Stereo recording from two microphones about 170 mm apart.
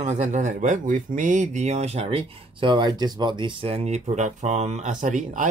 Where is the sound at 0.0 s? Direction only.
45° right (ahead or behind).